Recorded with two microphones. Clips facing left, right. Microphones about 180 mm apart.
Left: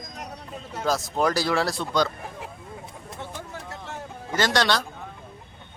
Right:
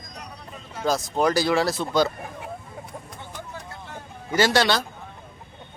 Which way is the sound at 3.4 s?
85° left.